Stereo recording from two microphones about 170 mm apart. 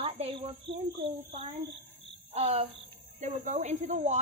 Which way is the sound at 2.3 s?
35° right (ahead or behind).